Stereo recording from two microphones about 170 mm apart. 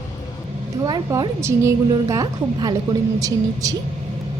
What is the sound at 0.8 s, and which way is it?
A woman's voice, 25° right (ahead or behind).